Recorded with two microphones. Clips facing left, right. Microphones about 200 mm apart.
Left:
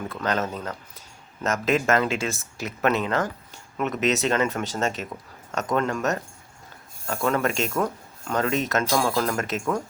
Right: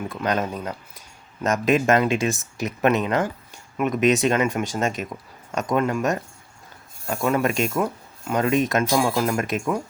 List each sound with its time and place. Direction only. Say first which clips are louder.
0.1 s speech: right 2 dB; 15° right (ahead or behind)